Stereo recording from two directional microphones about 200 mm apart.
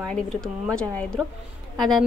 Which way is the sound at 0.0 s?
5° left (ahead or behind).